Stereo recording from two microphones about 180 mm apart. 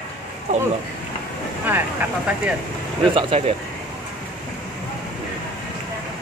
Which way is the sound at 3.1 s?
30° right (ahead or behind).